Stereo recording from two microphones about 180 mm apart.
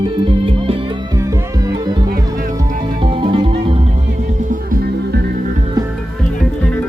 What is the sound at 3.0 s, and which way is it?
Music, 25° right (ahead or behind).